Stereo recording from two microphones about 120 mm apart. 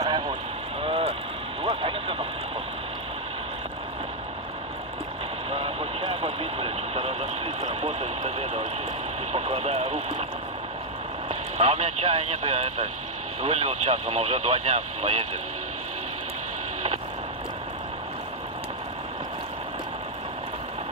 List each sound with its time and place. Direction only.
0.8 s vehicle: 55° right (ahead or behind)
1.6 s a sound: 50° right (ahead or behind)
5.5 s vehicle: 55° right (ahead or behind)
9.3 s radio: 65° right (ahead or behind)
11.2 s speech: 65° right (ahead or behind)